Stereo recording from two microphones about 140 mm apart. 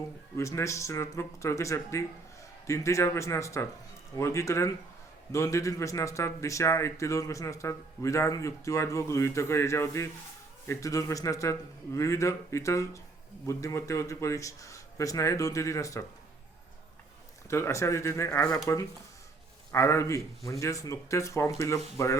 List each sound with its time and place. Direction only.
0.3 s a man's voice: 20° left (ahead or behind)
17.5 s a man's voice: 20° left (ahead or behind)
19.7 s a man's voice: 20° left (ahead or behind)